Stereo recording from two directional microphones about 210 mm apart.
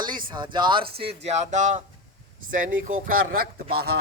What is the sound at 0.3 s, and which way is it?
Speech, 20° right (ahead or behind).